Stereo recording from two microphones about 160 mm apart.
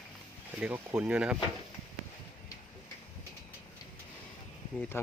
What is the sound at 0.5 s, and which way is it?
Speech, 10° right (ahead or behind).